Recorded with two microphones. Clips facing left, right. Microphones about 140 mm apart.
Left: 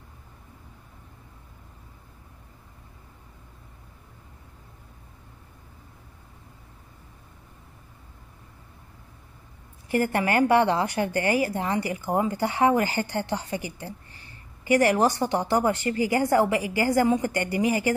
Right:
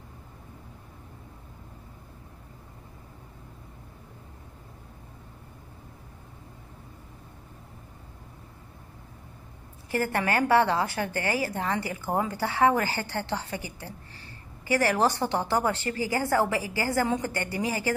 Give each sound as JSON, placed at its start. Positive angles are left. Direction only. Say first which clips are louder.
{"t": 9.8, "sound": "a woman's voice", "louder": "left 3 dB", "side_deg": 15}